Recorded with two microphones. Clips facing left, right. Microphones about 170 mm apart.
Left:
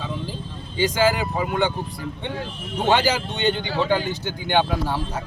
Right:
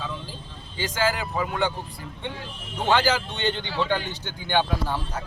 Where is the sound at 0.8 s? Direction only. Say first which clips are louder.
Left 6 dB; 15° left (ahead or behind).